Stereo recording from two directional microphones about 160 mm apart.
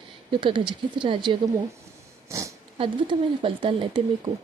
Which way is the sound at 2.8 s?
35° right (ahead or behind).